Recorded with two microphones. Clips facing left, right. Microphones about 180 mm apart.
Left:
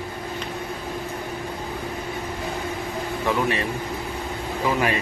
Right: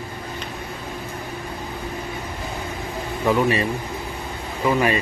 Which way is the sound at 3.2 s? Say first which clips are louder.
Right 5 dB; centre (ahead or behind).